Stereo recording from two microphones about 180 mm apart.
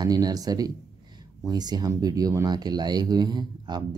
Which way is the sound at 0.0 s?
20° right (ahead or behind).